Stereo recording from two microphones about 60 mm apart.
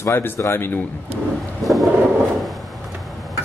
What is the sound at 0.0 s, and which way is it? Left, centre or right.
Speech, left.